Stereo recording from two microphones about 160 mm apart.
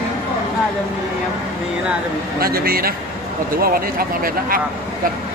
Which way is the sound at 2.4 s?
70° right (ahead or behind).